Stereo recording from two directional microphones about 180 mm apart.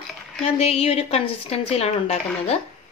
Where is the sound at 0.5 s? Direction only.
35° left (ahead or behind).